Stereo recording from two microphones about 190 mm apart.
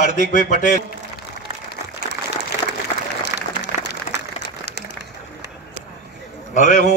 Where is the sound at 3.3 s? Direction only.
10° right (ahead or behind).